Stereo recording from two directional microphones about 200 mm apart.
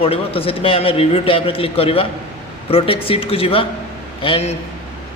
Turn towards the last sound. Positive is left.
turn(degrees=30)  # may be behind; listen again after turning